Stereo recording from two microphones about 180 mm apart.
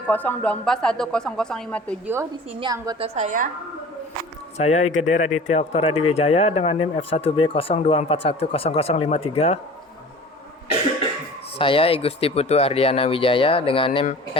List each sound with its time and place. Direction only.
0.1 s a woman's voice: 10° left (ahead or behind)
2.5 s a woman's voice: 30° right (ahead or behind)
3.0 s a woman's voice: 40° right (ahead or behind)
4.5 s speech: 40° left (ahead or behind)
11.5 s speech: 30° left (ahead or behind)